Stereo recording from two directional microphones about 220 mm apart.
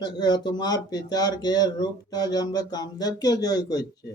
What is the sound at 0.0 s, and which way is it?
Speech, 20° left (ahead or behind).